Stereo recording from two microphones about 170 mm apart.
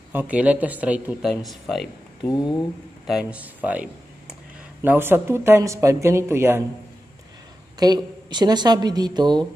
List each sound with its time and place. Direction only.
0.1 s speech: 10° right (ahead or behind)
2.2 s speech: 25° left (ahead or behind)
3.1 s speech: 5° right (ahead or behind)
7.8 s a woman's voice: 25° right (ahead or behind)